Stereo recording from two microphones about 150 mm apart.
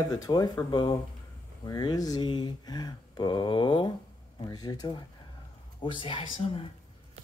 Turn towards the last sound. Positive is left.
turn(degrees=35)  # may be behind; listen again after turning